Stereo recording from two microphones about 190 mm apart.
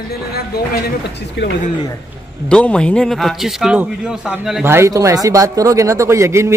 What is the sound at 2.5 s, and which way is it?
Speech, 5° left (ahead or behind).